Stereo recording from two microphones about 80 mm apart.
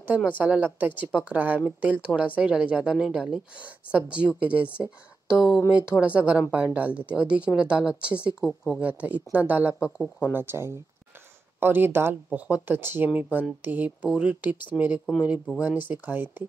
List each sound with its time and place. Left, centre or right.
0.4 s speech: right
10.3 s speech: right
12.3 s speech: centre